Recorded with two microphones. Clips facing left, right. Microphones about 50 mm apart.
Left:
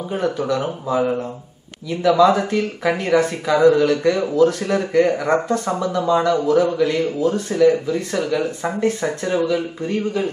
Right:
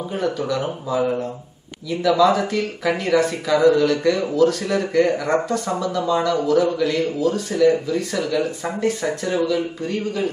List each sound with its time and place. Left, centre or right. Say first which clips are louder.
0.1 s speech: left 3 dB; centre
1.9 s speech: left 2 dB; centre
4.4 s speech: left 1 dB; left
6.1 s speech: left 3 dB; centre
6.4 s speech: left 2 dB; left